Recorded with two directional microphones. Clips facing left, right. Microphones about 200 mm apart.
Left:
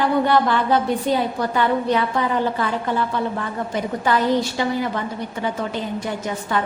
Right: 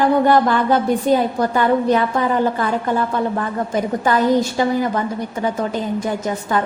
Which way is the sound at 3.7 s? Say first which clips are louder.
Right 3 dB; 45° right (ahead or behind).